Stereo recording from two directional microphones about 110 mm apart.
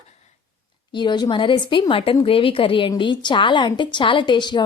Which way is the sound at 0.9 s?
40° left (ahead or behind).